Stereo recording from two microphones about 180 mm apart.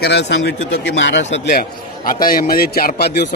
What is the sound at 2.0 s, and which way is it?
A man's voice, 50° left (ahead or behind).